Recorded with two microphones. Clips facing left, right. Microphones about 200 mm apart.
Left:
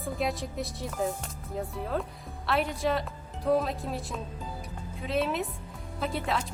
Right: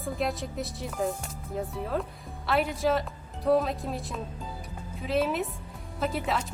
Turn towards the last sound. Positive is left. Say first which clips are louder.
# right 1 dB
turn(degrees=0)  # may be behind; listen again after turning